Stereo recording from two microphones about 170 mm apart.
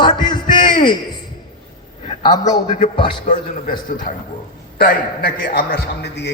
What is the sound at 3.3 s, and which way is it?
Speech, 50° left (ahead or behind).